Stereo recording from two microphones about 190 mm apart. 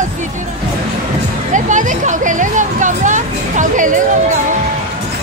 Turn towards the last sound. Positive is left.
turn(degrees=-45)  # may be behind; listen again after turning